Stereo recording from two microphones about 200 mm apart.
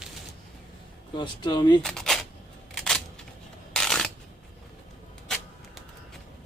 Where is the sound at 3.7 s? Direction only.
Centre (ahead or behind).